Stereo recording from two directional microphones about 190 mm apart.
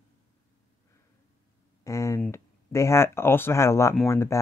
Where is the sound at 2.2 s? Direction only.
15° left (ahead or behind).